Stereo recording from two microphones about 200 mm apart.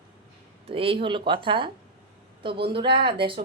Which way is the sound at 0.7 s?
30° right (ahead or behind).